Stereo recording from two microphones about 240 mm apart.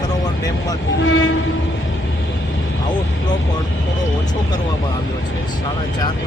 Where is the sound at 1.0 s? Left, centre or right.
Left.